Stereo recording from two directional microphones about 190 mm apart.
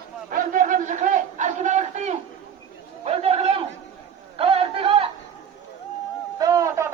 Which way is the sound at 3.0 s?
30° right (ahead or behind).